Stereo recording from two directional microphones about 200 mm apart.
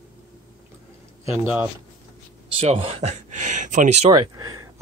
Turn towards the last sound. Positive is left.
turn(degrees=-20)  # may be behind; listen again after turning